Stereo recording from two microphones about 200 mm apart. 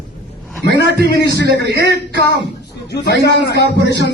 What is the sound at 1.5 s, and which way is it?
Speech, 60° right (ahead or behind).